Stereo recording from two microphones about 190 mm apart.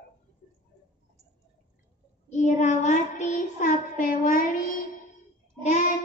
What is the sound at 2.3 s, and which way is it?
Child singing, 40° left (ahead or behind).